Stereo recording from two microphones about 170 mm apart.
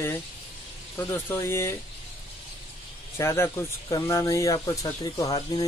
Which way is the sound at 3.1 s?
15° left (ahead or behind).